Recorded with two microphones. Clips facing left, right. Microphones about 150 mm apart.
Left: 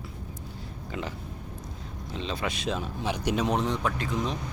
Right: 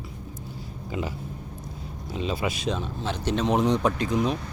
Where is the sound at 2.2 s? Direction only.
10° right (ahead or behind).